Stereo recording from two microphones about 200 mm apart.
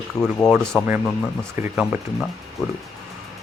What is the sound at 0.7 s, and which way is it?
Speech, 5° right (ahead or behind).